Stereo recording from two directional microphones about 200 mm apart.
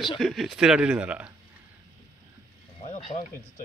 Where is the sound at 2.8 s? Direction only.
35° left (ahead or behind).